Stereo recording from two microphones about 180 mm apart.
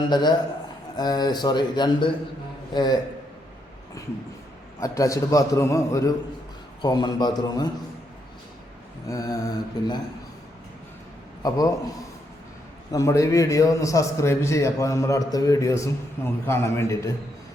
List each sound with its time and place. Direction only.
0.1 s a man's voice: 25° left (ahead or behind)
4.8 s a man's voice: 20° left (ahead or behind)
9.0 s a man's voice: 20° left (ahead or behind)
11.4 s a man's voice: 20° left (ahead or behind)
12.9 s a man's voice: 20° left (ahead or behind)